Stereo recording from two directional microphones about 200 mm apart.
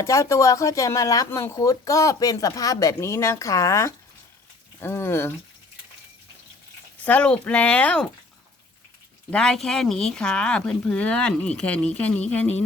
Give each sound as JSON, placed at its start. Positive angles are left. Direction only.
{"t": 0.0, "sound": "speech", "side_deg": 15}
{"t": 7.0, "sound": "speech", "side_deg": 5}
{"t": 9.3, "sound": "speech", "side_deg": 5}